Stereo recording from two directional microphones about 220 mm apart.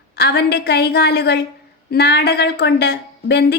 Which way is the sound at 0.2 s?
45° left (ahead or behind).